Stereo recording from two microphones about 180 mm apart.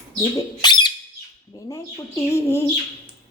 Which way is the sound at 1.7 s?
15° left (ahead or behind).